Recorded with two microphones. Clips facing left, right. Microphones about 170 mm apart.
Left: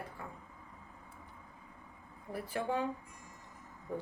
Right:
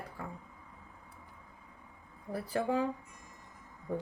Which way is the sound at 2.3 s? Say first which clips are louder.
Right 4 dB; 35° right (ahead or behind).